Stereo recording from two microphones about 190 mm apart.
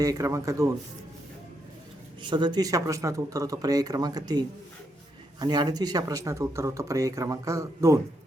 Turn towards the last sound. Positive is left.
turn(degrees=-15)  # may be behind; listen again after turning